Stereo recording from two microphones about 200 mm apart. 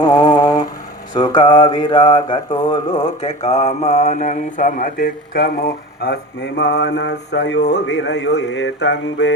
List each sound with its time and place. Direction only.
0.1 s a sound: 20° left (ahead or behind)
1.1 s mantra: 20° left (ahead or behind); by 6.1 s 50° left (ahead or behind)
6.6 s speech: 55° left (ahead or behind)